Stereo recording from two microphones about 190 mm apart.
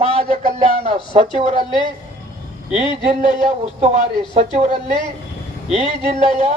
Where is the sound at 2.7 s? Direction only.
40° right (ahead or behind).